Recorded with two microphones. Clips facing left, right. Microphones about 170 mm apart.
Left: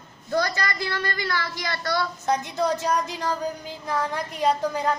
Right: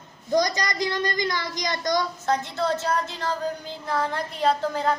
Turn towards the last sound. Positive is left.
turn(degrees=15)  # may be behind; listen again after turning